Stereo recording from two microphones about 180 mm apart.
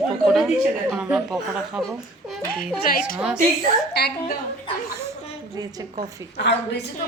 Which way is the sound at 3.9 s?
65° left (ahead or behind).